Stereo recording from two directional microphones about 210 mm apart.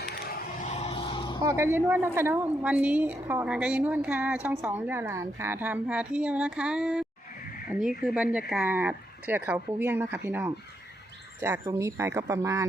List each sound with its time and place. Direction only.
0.1 s vehicle: 45° left (ahead or behind); by 1.4 s 20° left (ahead or behind)
1.4 s a woman's voice: 15° right (ahead or behind)